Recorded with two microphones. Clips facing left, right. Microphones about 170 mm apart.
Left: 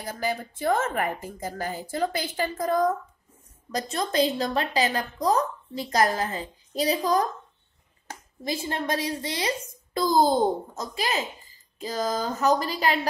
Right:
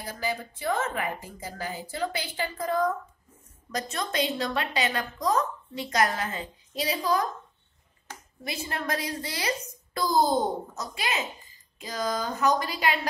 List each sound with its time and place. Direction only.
0.0 s speech: 45° left (ahead or behind)
3.7 s a woman's voice: 30° left (ahead or behind)